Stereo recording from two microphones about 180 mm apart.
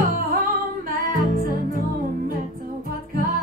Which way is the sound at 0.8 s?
55° right (ahead or behind).